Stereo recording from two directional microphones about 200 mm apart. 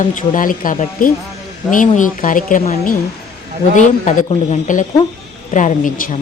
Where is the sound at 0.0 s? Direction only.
40° left (ahead or behind).